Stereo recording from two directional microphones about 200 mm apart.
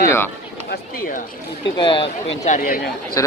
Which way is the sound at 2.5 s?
45° left (ahead or behind).